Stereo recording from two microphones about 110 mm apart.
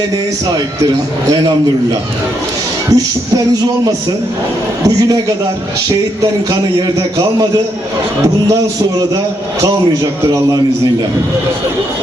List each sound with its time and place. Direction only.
1.3 s a man's voice: 40° right (ahead or behind)
6.5 s a man's voice: 35° right (ahead or behind)